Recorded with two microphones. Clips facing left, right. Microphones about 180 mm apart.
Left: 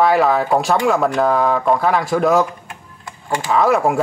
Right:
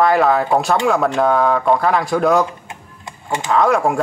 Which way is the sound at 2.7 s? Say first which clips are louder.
Right 1 dB; 20° right (ahead or behind).